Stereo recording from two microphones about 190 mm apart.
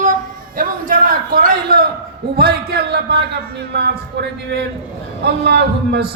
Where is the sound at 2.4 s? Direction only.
55° right (ahead or behind).